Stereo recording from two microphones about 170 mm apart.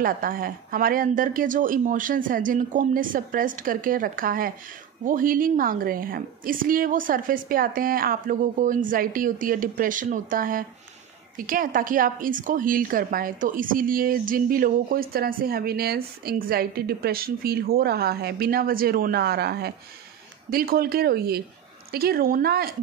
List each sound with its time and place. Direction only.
0.0 s a woman's voice: 55° right (ahead or behind)